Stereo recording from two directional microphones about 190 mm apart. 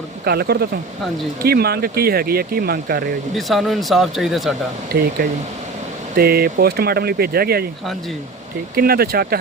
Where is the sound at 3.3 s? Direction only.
Centre (ahead or behind).